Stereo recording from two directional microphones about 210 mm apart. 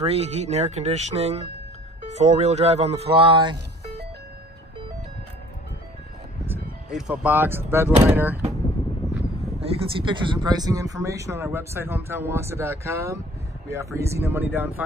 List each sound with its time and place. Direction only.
0.0 s speech: 30° right (ahead or behind)
6.4 s speech: 5° right (ahead or behind)
7.9 s speech: 30° right (ahead or behind)
9.6 s speech: 25° right (ahead or behind); by 14.7 s 10° right (ahead or behind)